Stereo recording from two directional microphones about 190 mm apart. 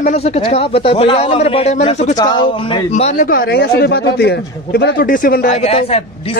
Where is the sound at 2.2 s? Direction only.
25° left (ahead or behind).